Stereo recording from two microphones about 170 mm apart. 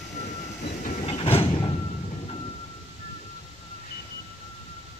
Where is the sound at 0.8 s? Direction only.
45° left (ahead or behind).